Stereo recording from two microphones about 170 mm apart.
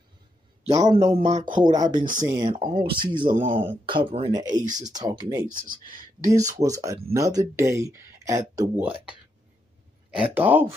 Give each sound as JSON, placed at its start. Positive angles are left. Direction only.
{"t": 0.7, "sound": "speech", "side_deg": -25}
{"t": 1.5, "sound": "speech", "side_deg": -25}
{"t": 2.0, "sound": "speech", "side_deg": -50}
{"t": 2.2, "sound": "speech", "side_deg": -25}
{"t": 5.5, "sound": "speech", "side_deg": -55}
{"t": 6.3, "sound": "speech", "side_deg": -20}
{"t": 10.3, "sound": "speech", "side_deg": -10}